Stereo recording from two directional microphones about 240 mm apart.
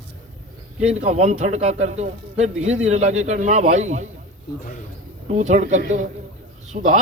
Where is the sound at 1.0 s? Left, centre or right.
Right.